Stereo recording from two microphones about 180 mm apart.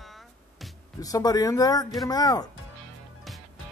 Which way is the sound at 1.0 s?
20° left (ahead or behind).